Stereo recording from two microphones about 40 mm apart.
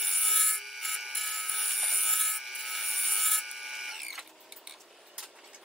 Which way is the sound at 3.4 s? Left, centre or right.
Centre.